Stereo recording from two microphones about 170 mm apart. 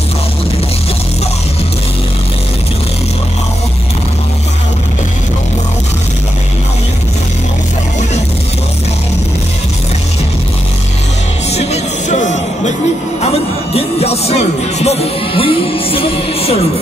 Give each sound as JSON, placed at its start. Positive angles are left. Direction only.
{"t": 11.5, "sound": "music", "side_deg": 40}
{"t": 13.7, "sound": "music", "side_deg": 35}